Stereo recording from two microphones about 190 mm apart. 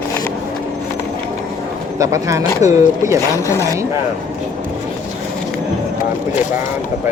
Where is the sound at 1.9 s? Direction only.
15° right (ahead or behind).